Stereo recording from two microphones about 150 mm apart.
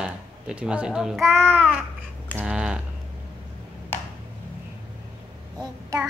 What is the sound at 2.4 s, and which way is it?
Speech, 5° right (ahead or behind).